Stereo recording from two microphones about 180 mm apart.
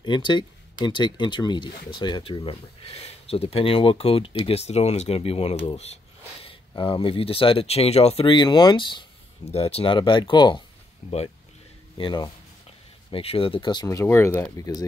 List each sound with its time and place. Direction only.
0.0 s speech: 25° left (ahead or behind)